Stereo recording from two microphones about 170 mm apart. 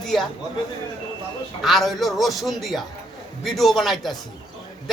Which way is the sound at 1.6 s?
Centre (ahead or behind).